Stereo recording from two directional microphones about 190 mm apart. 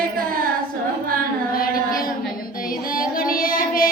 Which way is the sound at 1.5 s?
50° left (ahead or behind).